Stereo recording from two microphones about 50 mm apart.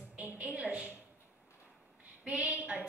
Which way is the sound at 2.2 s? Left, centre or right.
Right.